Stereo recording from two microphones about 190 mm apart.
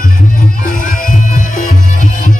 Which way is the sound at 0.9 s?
45° left (ahead or behind).